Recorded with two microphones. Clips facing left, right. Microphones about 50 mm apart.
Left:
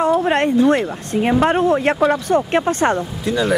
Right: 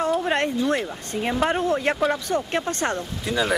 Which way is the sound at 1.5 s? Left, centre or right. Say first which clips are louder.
Left 6 dB; centre.